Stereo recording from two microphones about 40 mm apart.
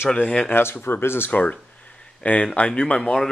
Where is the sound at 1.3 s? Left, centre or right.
Left.